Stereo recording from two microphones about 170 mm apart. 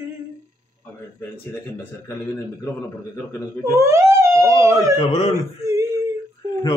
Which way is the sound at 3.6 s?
15° right (ahead or behind).